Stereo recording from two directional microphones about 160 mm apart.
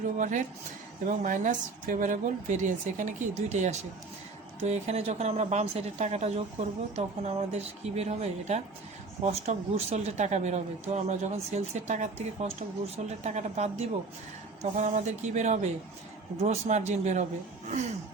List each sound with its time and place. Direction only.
0.2 s speech: 50° right (ahead or behind)